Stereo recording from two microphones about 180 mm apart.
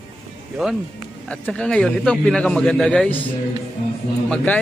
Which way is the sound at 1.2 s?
5° left (ahead or behind).